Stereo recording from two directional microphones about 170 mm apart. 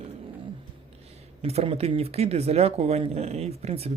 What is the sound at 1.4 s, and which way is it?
Speech, 35° right (ahead or behind).